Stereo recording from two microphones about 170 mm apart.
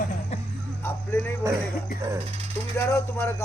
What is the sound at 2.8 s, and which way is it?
Speech, 15° left (ahead or behind).